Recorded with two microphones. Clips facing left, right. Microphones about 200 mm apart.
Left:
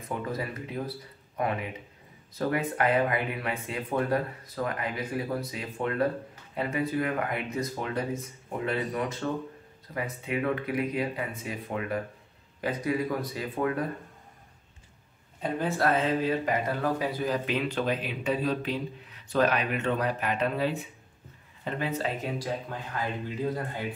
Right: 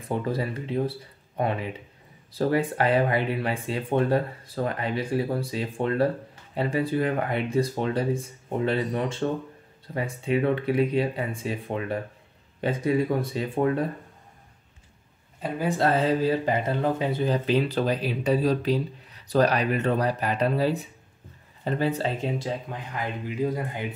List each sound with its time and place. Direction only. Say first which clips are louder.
0.1 s speech: right 5 dB; 30° right (ahead or behind)
15.4 s speech: right 2 dB; 5° right (ahead or behind)
15.8 s speech: right 4 dB; 35° right (ahead or behind); by 23.9 s 15° right (ahead or behind)